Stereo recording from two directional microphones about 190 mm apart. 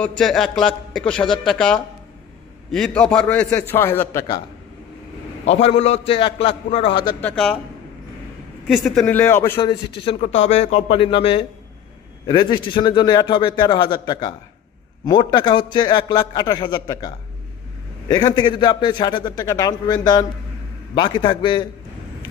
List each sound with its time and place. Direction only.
0.2 s a man's voice: centre (ahead or behind)
5.4 s a man's voice: 35° left (ahead or behind)
7.2 s a man's voice: 5° left (ahead or behind)
8.6 s a man's voice: centre (ahead or behind)
9.6 s a man's voice: 25° left (ahead or behind)